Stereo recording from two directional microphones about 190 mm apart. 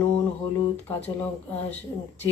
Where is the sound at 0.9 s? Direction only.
10° left (ahead or behind).